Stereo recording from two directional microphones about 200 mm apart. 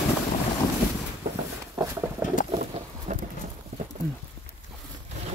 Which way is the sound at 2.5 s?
35° right (ahead or behind).